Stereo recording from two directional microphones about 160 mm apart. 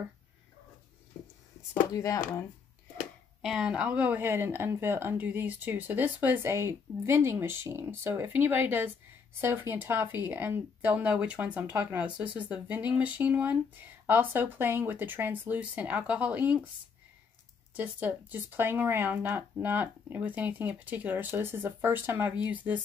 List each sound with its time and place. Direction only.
2.0 s speech: 20° left (ahead or behind)
3.4 s speech: 5° right (ahead or behind)
17.7 s speech: 10° right (ahead or behind)